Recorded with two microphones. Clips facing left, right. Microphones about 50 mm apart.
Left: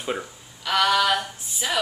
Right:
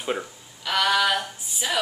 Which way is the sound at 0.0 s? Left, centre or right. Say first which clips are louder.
Right 1 dB; centre.